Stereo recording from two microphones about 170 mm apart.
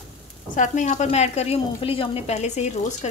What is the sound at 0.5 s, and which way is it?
A woman's voice, 45° left (ahead or behind).